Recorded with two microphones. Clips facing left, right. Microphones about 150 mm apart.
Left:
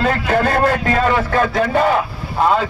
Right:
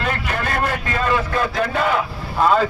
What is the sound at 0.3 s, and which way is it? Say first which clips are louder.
A man's voice: left 9 dB; 50° left (ahead or behind).